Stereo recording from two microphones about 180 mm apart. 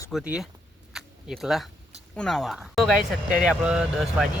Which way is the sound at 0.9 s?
Centre (ahead or behind).